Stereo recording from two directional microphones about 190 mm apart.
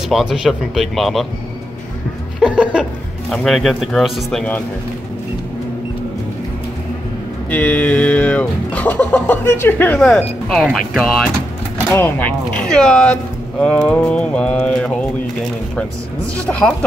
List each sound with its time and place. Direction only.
0.1 s speech: centre (ahead or behind)
2.4 s speech: 5° right (ahead or behind)
7.4 s speech: 10° left (ahead or behind)
16.3 s speech: 5° left (ahead or behind)